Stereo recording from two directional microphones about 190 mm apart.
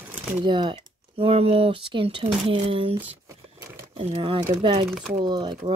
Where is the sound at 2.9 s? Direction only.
15° right (ahead or behind).